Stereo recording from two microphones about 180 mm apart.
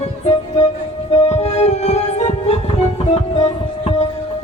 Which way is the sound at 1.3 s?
35° left (ahead or behind).